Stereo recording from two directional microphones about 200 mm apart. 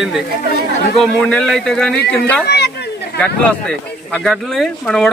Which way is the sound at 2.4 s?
55° left (ahead or behind).